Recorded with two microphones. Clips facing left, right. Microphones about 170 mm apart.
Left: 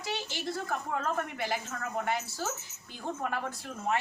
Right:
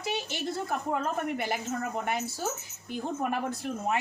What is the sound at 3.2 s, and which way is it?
Speech, 15° right (ahead or behind).